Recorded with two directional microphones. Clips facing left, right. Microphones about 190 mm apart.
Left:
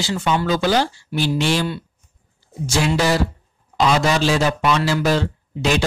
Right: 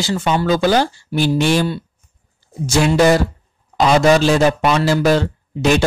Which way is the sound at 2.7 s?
50° right (ahead or behind).